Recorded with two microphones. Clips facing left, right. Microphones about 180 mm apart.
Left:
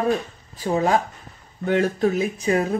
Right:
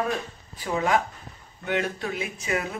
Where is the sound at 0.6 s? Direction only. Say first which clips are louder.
Left 4 dB; 40° left (ahead or behind).